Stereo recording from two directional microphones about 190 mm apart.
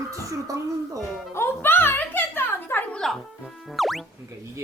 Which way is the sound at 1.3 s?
10° left (ahead or behind).